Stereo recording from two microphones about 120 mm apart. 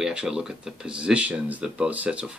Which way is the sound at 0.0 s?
5° right (ahead or behind).